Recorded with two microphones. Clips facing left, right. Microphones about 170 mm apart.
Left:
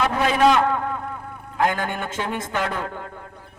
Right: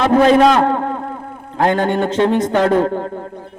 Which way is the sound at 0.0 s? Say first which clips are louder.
Right 8 dB; 35° right (ahead or behind).